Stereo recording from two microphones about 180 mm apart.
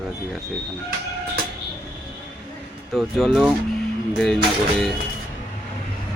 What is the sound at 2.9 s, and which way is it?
Speech, centre (ahead or behind).